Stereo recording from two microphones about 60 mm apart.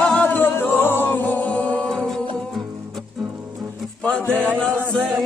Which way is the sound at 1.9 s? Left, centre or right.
Centre.